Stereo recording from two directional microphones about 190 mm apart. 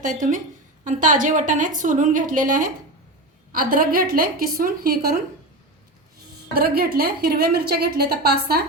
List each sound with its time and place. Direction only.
0.0 s a woman's voice: 40° right (ahead or behind)
6.5 s a woman's voice: 50° right (ahead or behind)